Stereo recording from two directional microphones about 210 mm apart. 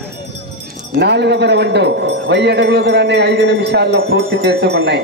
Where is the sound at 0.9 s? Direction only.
55° right (ahead or behind).